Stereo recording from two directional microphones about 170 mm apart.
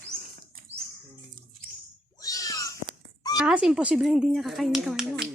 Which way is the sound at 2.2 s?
20° left (ahead or behind).